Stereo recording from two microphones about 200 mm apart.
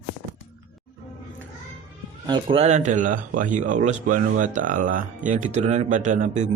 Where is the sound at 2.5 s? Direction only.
35° right (ahead or behind).